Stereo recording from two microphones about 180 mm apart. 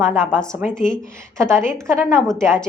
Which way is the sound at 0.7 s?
5° left (ahead or behind).